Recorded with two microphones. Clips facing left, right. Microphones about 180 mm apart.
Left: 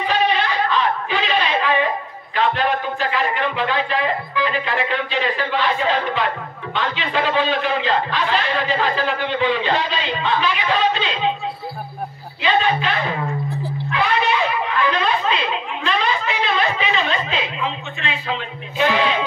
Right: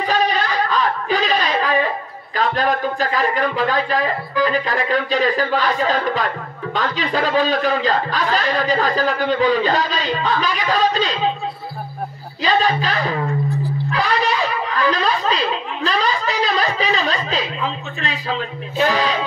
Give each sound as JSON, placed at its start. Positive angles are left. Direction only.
{"t": 0.0, "sound": "a sound", "side_deg": -40}
{"t": 2.3, "sound": "speech", "side_deg": -40}
{"t": 12.4, "sound": "speech", "side_deg": -35}
{"t": 13.9, "sound": "guitar", "side_deg": -35}